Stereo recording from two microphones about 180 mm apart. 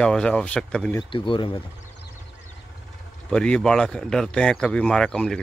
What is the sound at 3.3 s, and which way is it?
Speech, 5° left (ahead or behind).